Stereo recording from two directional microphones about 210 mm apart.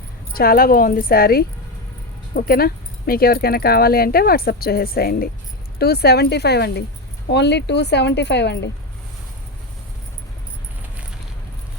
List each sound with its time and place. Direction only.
0.3 s speech: 45° left (ahead or behind)